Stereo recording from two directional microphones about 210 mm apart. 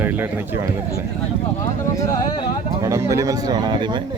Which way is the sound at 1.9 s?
15° left (ahead or behind).